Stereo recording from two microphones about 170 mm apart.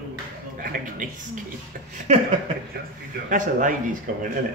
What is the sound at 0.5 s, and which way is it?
Speech, 50° right (ahead or behind).